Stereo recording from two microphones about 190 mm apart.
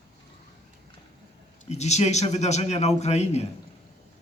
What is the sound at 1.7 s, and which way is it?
A man's voice, 35° left (ahead or behind).